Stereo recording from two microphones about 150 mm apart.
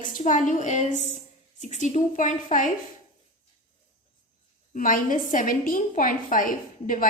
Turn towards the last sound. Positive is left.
turn(degrees=65)  # may be behind; listen again after turning